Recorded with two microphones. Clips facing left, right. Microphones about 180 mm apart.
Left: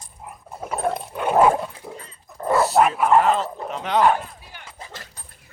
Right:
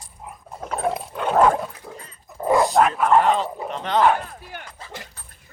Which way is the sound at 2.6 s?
5° left (ahead or behind).